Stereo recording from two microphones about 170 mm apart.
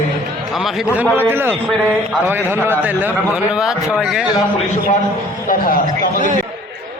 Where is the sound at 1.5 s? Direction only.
Centre (ahead or behind).